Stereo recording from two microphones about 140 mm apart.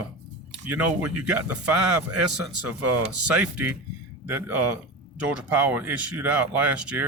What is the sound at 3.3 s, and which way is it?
Speech, 10° right (ahead or behind).